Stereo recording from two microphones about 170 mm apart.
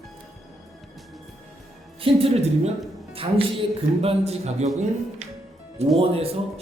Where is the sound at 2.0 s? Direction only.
35° right (ahead or behind).